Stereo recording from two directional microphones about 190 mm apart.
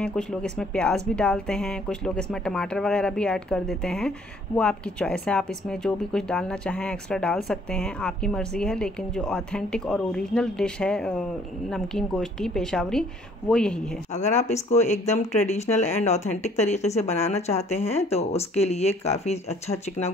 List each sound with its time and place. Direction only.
0.0 s speech: 5° left (ahead or behind)
14.1 s speech: 40° left (ahead or behind)